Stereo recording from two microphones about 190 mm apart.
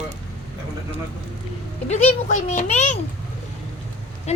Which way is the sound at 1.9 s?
40° left (ahead or behind).